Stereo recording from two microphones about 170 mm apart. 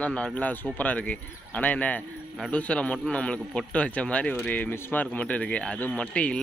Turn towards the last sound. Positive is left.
turn(degrees=5)  # may be behind; listen again after turning